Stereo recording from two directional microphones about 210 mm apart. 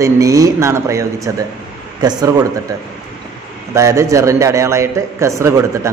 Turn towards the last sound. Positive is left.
turn(degrees=-15)  # may be behind; listen again after turning